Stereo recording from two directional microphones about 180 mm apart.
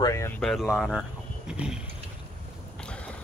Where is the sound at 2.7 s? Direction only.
5° left (ahead or behind).